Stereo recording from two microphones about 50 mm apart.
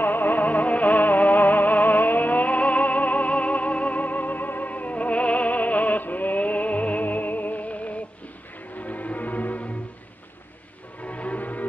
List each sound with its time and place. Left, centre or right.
0.0 s music: left
11.0 s music: left